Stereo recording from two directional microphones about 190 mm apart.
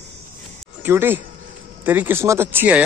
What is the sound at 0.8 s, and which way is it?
Speech, 10° right (ahead or behind).